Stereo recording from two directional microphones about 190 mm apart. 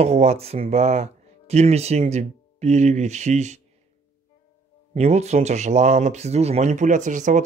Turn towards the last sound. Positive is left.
turn(degrees=-40)  # may be behind; listen again after turning